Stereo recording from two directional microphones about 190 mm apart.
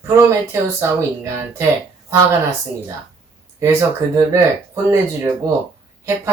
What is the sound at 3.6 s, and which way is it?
Speech, 15° right (ahead or behind).